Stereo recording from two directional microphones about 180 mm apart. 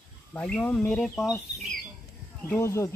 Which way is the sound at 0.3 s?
5° left (ahead or behind).